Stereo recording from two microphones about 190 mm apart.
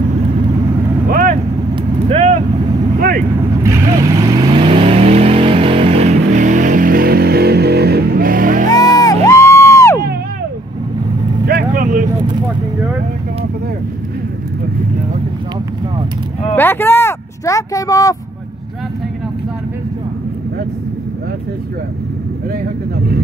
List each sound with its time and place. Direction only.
1.0 s vehicle: 50° right (ahead or behind)
3.6 s vehicle: 15° right (ahead or behind); by 8.6 s 45° right (ahead or behind)
8.7 s music: 20° left (ahead or behind)
11.4 s vehicle: 50° right (ahead or behind)
16.5 s a sound: 10° left (ahead or behind)